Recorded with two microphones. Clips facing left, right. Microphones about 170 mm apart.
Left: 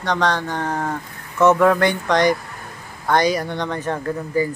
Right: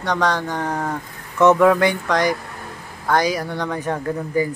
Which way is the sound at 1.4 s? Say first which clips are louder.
Right 1 dB; centre (ahead or behind).